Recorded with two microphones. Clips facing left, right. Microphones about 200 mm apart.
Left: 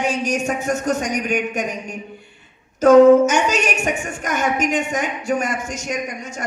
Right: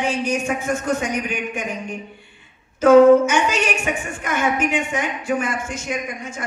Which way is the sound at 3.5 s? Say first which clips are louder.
Left 1 dB; 40° left (ahead or behind).